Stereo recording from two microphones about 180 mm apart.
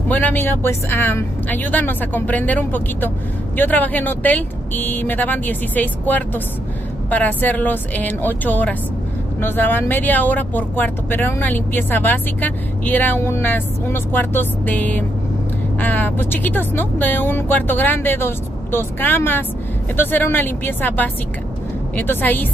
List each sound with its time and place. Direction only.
0.1 s speech: 10° left (ahead or behind)